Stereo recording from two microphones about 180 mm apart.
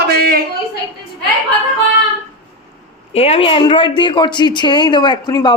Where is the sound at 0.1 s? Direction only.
60° right (ahead or behind).